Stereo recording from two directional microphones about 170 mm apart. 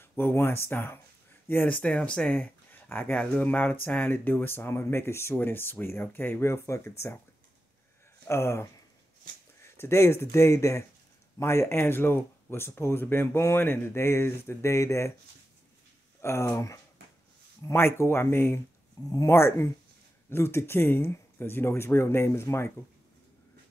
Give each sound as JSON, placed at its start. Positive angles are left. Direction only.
{"t": 0.0, "sound": "speech", "side_deg": 15}
{"t": 8.3, "sound": "speech", "side_deg": 15}
{"t": 9.8, "sound": "speech", "side_deg": 15}
{"t": 16.2, "sound": "speech", "side_deg": 15}